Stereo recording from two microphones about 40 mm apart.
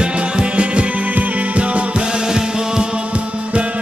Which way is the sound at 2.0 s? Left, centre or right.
Centre.